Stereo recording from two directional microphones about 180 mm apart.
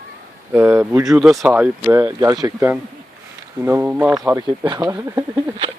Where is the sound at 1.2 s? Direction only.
5° right (ahead or behind).